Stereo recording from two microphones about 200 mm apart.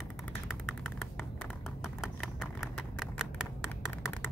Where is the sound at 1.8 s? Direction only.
Centre (ahead or behind).